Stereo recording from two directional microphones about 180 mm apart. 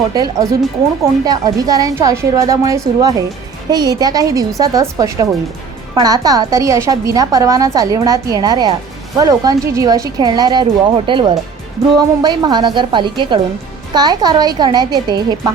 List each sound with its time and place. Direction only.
0.1 s a woman's voice: 20° right (ahead or behind)